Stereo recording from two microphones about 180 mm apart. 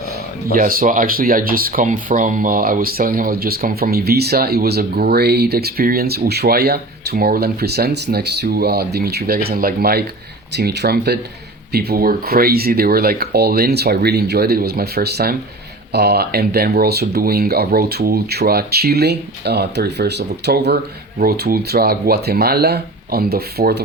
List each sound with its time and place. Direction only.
0.5 s speech: 50° right (ahead or behind)